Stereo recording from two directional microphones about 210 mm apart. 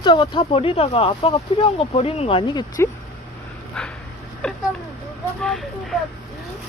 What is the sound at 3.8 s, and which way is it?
Dog, 5° left (ahead or behind).